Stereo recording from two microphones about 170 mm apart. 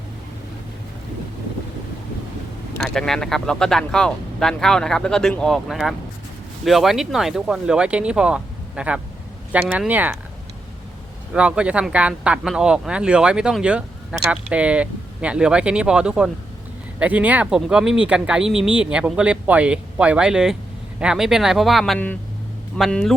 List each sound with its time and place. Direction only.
2.8 s speech: 5° left (ahead or behind)
11.3 s speech: 5° right (ahead or behind)